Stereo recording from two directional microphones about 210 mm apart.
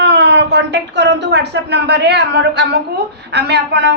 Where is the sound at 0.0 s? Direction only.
55° right (ahead or behind).